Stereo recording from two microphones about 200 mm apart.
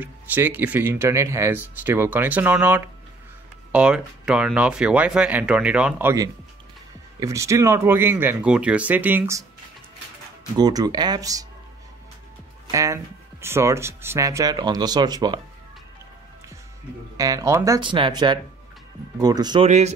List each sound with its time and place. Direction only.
0.0 s speech: 10° right (ahead or behind)
10.6 s speech: 20° right (ahead or behind)
12.7 s speech: 15° right (ahead or behind)
17.2 s speech: 15° right (ahead or behind)